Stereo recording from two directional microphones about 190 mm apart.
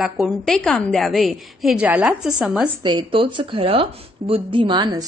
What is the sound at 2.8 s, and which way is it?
A woman's voice, 25° right (ahead or behind).